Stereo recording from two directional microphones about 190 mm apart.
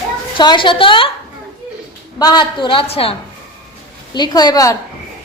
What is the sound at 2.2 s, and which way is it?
Speech, 20° left (ahead or behind).